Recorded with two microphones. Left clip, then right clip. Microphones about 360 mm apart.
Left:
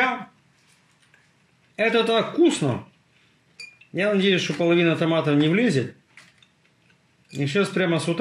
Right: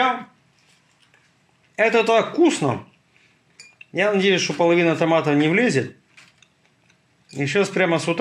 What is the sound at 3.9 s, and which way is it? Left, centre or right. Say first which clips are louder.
Speech: right 3 dB; centre.